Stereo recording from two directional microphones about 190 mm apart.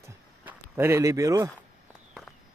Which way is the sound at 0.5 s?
10° right (ahead or behind).